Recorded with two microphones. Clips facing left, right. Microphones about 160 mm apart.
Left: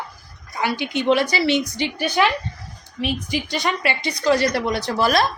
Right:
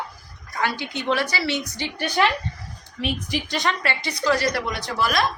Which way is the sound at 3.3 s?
5° left (ahead or behind).